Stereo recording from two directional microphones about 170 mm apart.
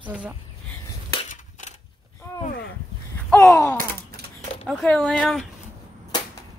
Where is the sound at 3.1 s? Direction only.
15° left (ahead or behind).